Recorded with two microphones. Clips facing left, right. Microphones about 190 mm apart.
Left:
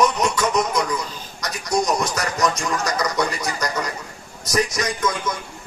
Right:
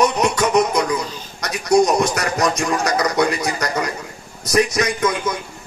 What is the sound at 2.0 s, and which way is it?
A man's voice, 65° right (ahead or behind).